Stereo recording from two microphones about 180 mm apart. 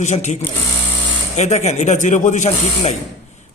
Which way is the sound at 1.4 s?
40° left (ahead or behind).